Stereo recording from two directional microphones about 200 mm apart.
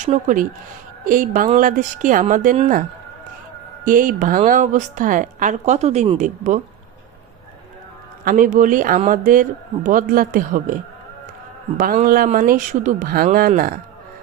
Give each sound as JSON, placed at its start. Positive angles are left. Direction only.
{"t": 0.0, "sound": "a woman's voice", "side_deg": -40}
{"t": 3.8, "sound": "a woman's voice", "side_deg": -40}
{"t": 8.2, "sound": "a woman's voice", "side_deg": -45}
{"t": 11.8, "sound": "speech", "side_deg": -40}